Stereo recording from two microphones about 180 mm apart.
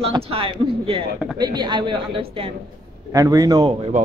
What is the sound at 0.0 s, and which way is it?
A man's voice, 30° right (ahead or behind).